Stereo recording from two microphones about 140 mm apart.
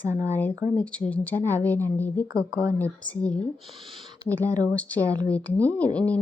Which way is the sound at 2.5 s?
20° right (ahead or behind).